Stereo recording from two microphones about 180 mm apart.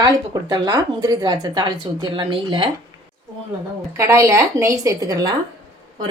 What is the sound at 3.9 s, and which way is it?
Speech, 15° right (ahead or behind).